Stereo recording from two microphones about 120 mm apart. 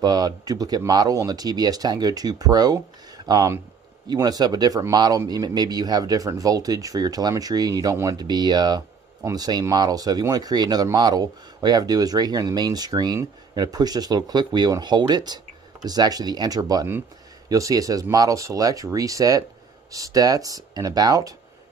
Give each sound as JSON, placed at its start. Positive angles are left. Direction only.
{"t": 0.0, "sound": "speech", "side_deg": -35}